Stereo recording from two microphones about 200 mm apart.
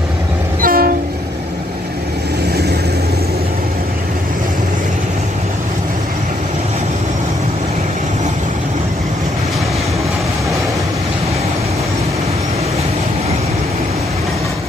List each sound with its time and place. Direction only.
0.6 s train: 45° right (ahead or behind)